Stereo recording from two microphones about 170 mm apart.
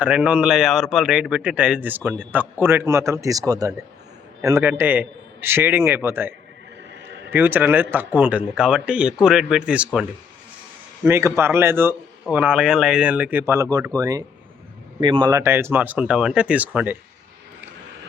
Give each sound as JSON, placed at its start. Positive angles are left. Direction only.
{"t": 0.0, "sound": "a man's voice", "side_deg": -5}